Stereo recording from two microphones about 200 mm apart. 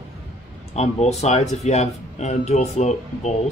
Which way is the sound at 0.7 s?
35° left (ahead or behind).